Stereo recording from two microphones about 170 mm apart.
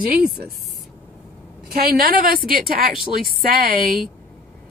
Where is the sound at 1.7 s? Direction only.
65° right (ahead or behind).